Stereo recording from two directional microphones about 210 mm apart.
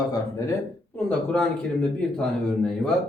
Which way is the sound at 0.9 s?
5° left (ahead or behind).